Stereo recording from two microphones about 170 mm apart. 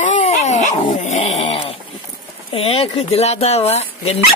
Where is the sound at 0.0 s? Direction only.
45° left (ahead or behind).